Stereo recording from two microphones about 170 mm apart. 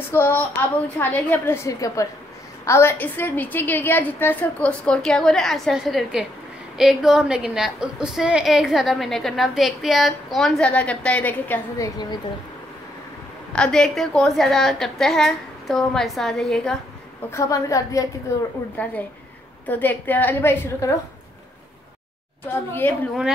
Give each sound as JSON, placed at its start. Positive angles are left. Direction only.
{"t": 0.1, "sound": "a woman's voice", "side_deg": 15}
{"t": 13.5, "sound": "a woman's voice", "side_deg": 5}
{"t": 17.3, "sound": "a woman's voice", "side_deg": 20}
{"t": 22.7, "sound": "a woman's voice", "side_deg": 10}